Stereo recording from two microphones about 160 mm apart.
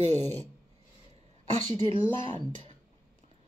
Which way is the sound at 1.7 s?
35° right (ahead or behind).